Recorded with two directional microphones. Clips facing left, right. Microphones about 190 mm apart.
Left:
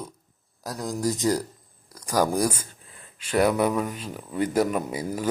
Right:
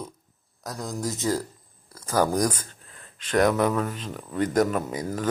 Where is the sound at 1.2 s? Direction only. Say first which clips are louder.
Left 2 dB; 15° left (ahead or behind).